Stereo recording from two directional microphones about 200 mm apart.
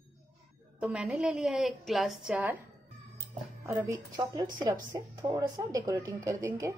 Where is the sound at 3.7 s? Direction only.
20° right (ahead or behind).